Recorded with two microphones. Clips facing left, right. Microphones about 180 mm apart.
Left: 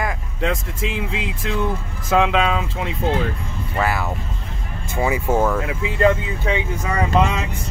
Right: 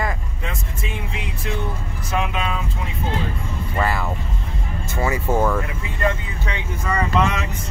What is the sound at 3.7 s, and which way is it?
Speech, 5° left (ahead or behind).